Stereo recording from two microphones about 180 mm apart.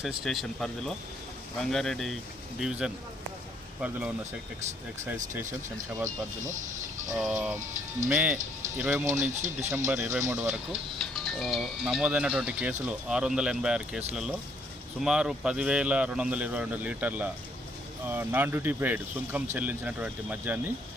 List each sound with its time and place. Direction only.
0.0 s speech: centre (ahead or behind)
7.2 s speech: 5° right (ahead or behind)
9.3 s speech: 40° right (ahead or behind)
9.6 s speech: 15° right (ahead or behind)
11.2 s speech: centre (ahead or behind)